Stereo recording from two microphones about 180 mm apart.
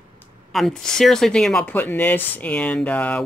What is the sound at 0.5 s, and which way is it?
Speech, centre (ahead or behind).